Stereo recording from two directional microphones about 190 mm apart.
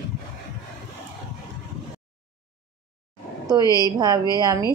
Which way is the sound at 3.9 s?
20° right (ahead or behind).